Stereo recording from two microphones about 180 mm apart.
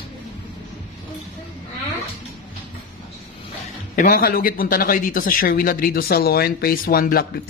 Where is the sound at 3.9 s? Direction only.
50° left (ahead or behind).